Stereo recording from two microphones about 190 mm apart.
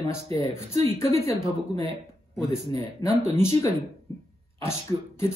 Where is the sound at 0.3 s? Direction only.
30° right (ahead or behind).